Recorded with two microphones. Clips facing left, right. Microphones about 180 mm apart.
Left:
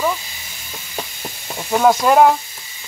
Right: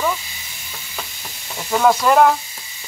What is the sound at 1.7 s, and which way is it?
Speech, 20° left (ahead or behind).